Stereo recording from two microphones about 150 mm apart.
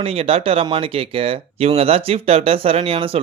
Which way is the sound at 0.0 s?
40° right (ahead or behind).